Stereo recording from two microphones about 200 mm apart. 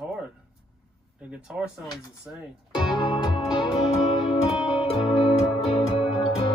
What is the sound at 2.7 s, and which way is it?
Music, 20° left (ahead or behind).